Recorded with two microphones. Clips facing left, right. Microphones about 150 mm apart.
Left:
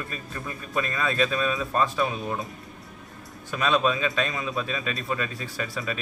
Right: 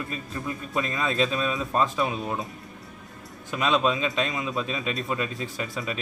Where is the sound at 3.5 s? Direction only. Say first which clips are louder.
Even; 20° right (ahead or behind).